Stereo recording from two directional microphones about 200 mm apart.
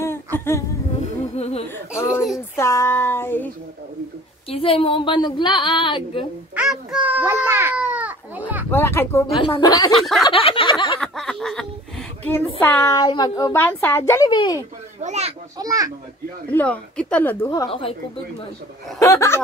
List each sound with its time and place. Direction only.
1.3 s speech: 30° left (ahead or behind)
2.0 s a child's voice: 15° left (ahead or behind)
4.5 s a woman's voice: 25° left (ahead or behind)
6.5 s a child's voice: 5° right (ahead or behind)
8.6 s a child's voice: 10° left (ahead or behind)
9.9 s a sound: centre (ahead or behind)
10.2 s a woman's voice: 25° left (ahead or behind)
11.0 s snicker: centre (ahead or behind)
12.5 s a child's voice: 10° left (ahead or behind)
15.0 s a child's voice: 35° right (ahead or behind)
15.6 s a child's voice: 15° right (ahead or behind)
16.4 s a child's voice: 5° left (ahead or behind)
17.6 s a woman's voice: 25° left (ahead or behind)
18.9 s a child's voice: 15° left (ahead or behind)